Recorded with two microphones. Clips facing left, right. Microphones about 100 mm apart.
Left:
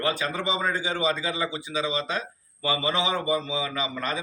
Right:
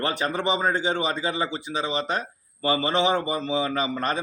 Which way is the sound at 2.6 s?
45° right (ahead or behind).